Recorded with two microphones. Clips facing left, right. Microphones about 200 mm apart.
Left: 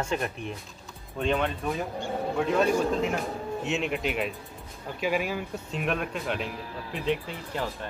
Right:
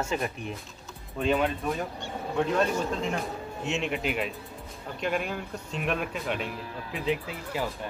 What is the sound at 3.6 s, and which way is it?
Speech, centre (ahead or behind).